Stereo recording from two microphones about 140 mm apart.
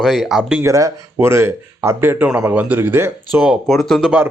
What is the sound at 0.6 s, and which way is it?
Speech, 25° right (ahead or behind).